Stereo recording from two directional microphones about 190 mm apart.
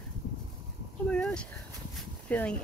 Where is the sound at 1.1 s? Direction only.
5° left (ahead or behind).